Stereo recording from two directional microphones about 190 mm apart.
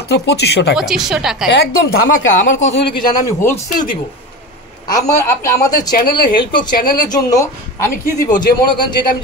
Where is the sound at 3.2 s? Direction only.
15° left (ahead or behind).